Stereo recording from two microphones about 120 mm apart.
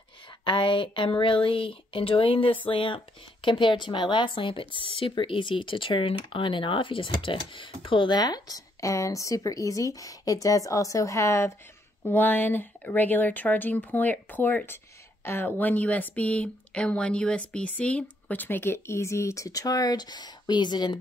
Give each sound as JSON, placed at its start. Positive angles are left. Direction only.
{"t": 0.5, "sound": "speech", "side_deg": 45}